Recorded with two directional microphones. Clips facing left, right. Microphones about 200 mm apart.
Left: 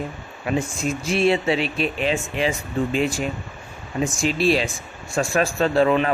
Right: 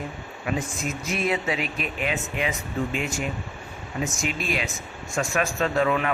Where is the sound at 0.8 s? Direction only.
30° left (ahead or behind).